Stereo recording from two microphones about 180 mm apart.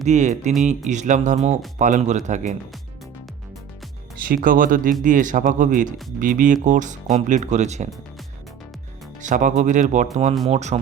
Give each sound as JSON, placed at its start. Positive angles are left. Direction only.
{"t": 0.0, "sound": "speech", "side_deg": -40}
{"t": 4.3, "sound": "speech", "side_deg": -50}
{"t": 9.2, "sound": "speech", "side_deg": -45}